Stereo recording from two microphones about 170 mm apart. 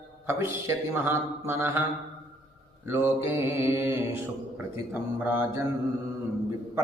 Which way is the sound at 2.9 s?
15° right (ahead or behind).